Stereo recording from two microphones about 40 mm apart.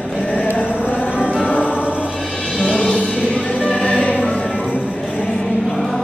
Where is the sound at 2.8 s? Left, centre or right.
Left.